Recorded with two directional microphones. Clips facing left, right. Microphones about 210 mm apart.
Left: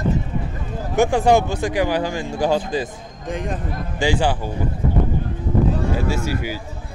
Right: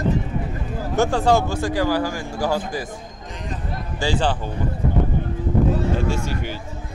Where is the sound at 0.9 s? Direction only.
15° left (ahead or behind).